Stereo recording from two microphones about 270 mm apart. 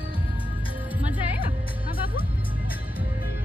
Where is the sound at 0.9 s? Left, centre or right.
Centre.